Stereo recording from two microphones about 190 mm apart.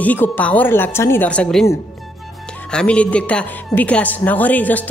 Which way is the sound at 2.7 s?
5° left (ahead or behind).